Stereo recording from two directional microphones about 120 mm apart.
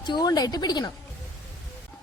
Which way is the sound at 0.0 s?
35° left (ahead or behind).